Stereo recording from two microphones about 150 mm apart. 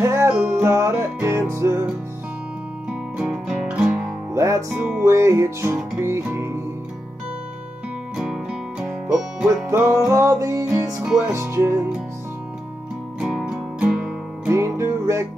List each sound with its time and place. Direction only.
0.0 s music: 15° right (ahead or behind)
3.2 s music: 5° right (ahead or behind)
4.4 s music: 20° right (ahead or behind)
8.2 s music: 5° right (ahead or behind)
9.7 s music: 20° right (ahead or behind)
11.0 s music: 5° right (ahead or behind)
11.3 s music: 15° right (ahead or behind)
13.2 s music: 5° right (ahead or behind)
14.5 s music: 20° right (ahead or behind)